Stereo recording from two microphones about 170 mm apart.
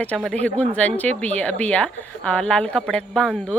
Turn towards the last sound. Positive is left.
turn(degrees=5)  # may be behind; listen again after turning